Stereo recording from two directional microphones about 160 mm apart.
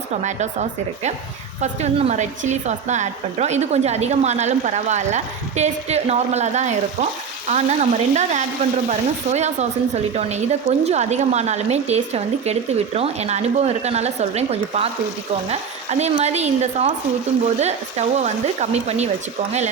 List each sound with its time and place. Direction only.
0.1 s speech: 45° right (ahead or behind)